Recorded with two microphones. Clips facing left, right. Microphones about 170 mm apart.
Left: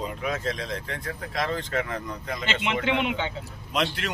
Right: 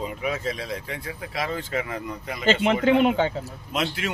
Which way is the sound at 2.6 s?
40° right (ahead or behind).